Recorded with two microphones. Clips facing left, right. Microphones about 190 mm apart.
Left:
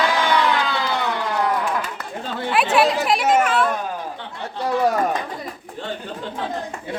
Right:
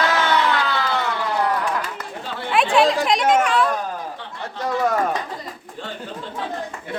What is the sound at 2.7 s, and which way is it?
A woman's voice, 5° left (ahead or behind).